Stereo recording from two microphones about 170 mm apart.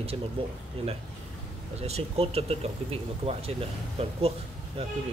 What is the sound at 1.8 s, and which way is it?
Speech, 35° right (ahead or behind).